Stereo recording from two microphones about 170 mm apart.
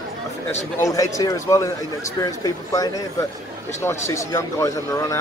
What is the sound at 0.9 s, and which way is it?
Speech, 20° left (ahead or behind).